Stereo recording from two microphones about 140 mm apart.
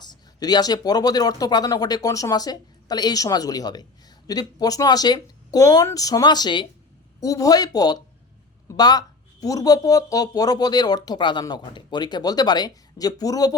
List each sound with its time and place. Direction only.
0.0 s speech: 30° left (ahead or behind)